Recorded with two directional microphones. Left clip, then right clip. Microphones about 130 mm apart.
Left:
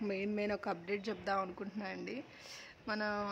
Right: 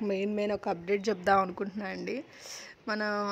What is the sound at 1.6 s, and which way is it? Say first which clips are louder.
A woman's voice: right 7 dB; 45° right (ahead or behind).